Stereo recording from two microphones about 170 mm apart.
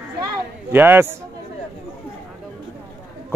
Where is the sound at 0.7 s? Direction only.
10° right (ahead or behind).